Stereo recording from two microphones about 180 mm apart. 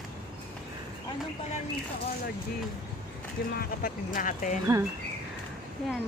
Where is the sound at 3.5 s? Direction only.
55° left (ahead or behind).